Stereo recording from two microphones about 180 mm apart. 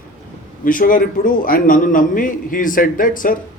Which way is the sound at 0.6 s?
50° left (ahead or behind).